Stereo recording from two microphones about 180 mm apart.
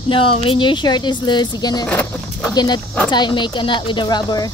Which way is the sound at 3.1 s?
25° left (ahead or behind).